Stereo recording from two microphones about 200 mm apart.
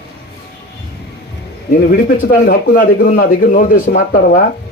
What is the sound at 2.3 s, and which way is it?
A man's voice, 45° left (ahead or behind).